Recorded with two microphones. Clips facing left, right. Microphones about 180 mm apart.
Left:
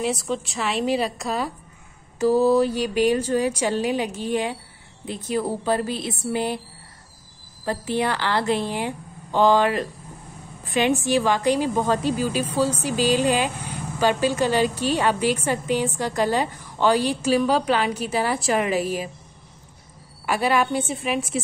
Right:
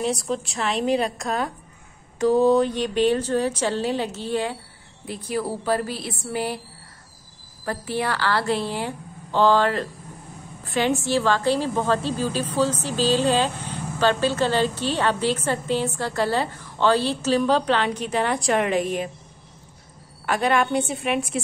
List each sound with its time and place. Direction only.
0.0 s a woman's voice: centre (ahead or behind); by 6.6 s 20° left (ahead or behind)
7.6 s a woman's voice: 20° left (ahead or behind); by 19.0 s 5° left (ahead or behind)
20.2 s a woman's voice: 5° left (ahead or behind)